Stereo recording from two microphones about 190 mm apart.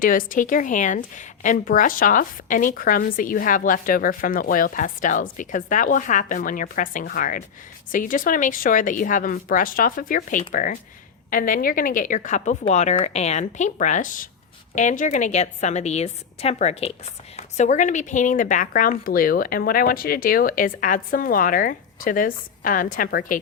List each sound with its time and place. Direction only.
0.0 s a woman's voice: 45° left (ahead or behind)